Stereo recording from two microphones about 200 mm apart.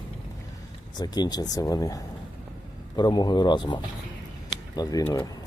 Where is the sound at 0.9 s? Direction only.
20° left (ahead or behind).